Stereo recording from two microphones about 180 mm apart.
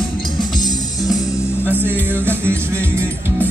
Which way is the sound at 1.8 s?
10° right (ahead or behind).